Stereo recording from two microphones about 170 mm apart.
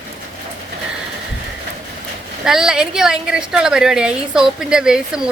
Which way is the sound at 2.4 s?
5° right (ahead or behind).